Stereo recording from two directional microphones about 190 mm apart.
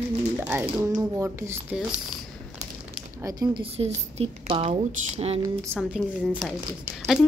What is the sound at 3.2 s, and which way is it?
A woman's voice, 20° right (ahead or behind).